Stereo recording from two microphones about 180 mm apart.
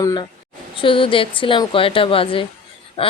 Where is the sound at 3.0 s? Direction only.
30° left (ahead or behind).